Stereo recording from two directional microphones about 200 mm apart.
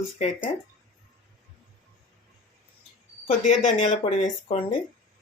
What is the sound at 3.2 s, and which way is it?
Speech, 35° left (ahead or behind).